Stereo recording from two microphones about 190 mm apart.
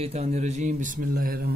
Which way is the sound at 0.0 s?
35° right (ahead or behind).